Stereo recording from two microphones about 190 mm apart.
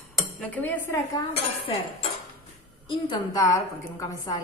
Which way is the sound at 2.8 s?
25° left (ahead or behind).